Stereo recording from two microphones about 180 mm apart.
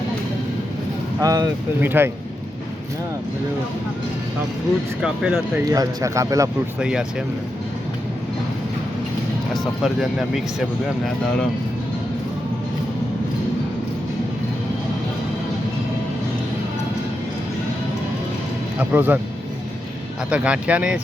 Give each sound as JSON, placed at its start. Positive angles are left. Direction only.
{"t": 1.2, "sound": "speech", "side_deg": -20}
{"t": 5.0, "sound": "speech", "side_deg": -5}
{"t": 5.6, "sound": "speech", "side_deg": -20}
{"t": 6.7, "sound": "speech", "side_deg": -5}
{"t": 9.8, "sound": "speech", "side_deg": 0}
{"t": 18.8, "sound": "speech", "side_deg": -10}
{"t": 20.3, "sound": "speech", "side_deg": -5}